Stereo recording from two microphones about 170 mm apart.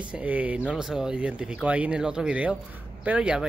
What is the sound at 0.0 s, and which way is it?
Speech, 10° right (ahead or behind).